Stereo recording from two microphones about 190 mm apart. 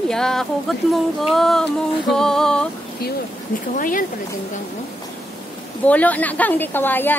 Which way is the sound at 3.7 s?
45° left (ahead or behind).